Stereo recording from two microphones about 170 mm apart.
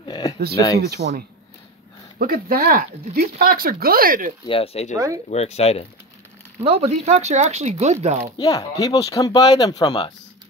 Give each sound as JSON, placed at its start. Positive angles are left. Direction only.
{"t": 0.0, "sound": "a sound", "side_deg": 25}
{"t": 0.7, "sound": "speech", "side_deg": -70}
{"t": 2.1, "sound": "speech", "side_deg": -60}
{"t": 4.5, "sound": "speech", "side_deg": 35}
{"t": 4.9, "sound": "speech", "side_deg": -20}
{"t": 5.3, "sound": "speech", "side_deg": 40}
{"t": 6.6, "sound": "speech", "side_deg": -40}
{"t": 8.4, "sound": "speech", "side_deg": 20}